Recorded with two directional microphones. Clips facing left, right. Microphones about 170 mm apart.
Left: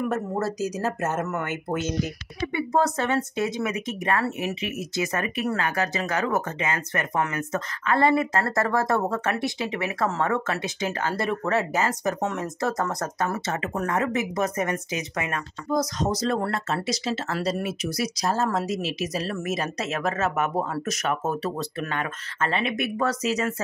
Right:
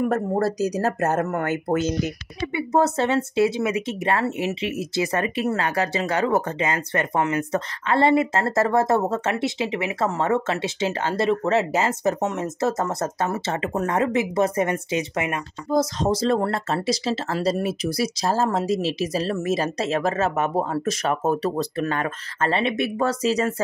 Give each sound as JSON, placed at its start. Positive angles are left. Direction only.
{"t": 0.0, "sound": "speech", "side_deg": -35}
{"t": 2.0, "sound": "speech", "side_deg": -25}